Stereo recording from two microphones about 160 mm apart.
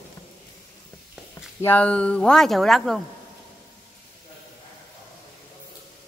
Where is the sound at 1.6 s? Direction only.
10° left (ahead or behind).